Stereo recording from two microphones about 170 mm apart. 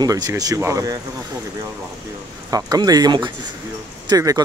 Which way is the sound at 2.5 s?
20° right (ahead or behind).